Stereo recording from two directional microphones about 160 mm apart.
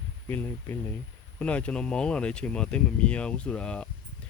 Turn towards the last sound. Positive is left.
turn(degrees=5)  # may be behind; listen again after turning